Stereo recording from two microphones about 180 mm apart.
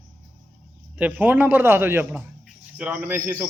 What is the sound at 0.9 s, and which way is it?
A man's voice, 10° right (ahead or behind).